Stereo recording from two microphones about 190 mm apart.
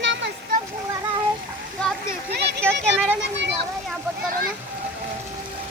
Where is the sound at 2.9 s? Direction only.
70° right (ahead or behind).